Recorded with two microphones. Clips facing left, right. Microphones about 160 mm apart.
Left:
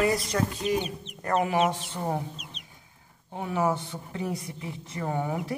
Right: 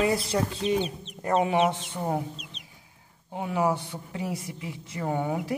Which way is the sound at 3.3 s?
15° right (ahead or behind).